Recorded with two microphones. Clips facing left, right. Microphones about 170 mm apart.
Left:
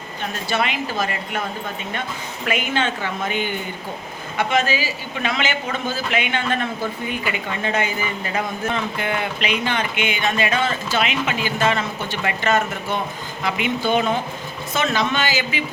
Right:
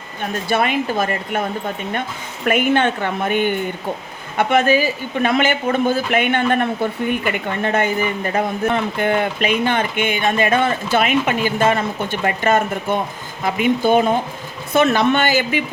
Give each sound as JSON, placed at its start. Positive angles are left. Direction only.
{"t": 0.2, "sound": "a man's voice", "side_deg": -50}
{"t": 2.5, "sound": "a woman's voice", "side_deg": -55}
{"t": 14.7, "sound": "a woman's voice", "side_deg": -55}